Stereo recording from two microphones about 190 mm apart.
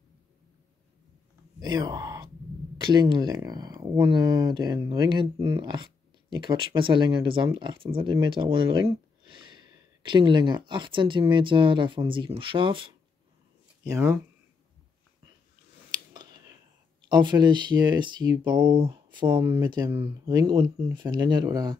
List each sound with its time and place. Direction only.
1.6 s speech: 20° right (ahead or behind)
13.8 s speech: 15° right (ahead or behind)
16.1 s a sound: 20° right (ahead or behind)
17.1 s speech: 25° right (ahead or behind)